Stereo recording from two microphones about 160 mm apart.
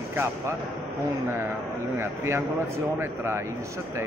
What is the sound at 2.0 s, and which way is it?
Speech, 15° right (ahead or behind).